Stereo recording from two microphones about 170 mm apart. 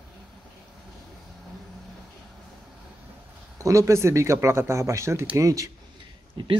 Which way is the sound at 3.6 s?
20° right (ahead or behind).